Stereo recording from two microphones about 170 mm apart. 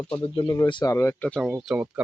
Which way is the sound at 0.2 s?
30° left (ahead or behind).